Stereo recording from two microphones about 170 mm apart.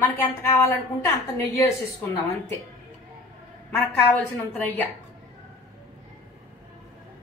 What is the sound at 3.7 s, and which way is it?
Speech, 10° left (ahead or behind).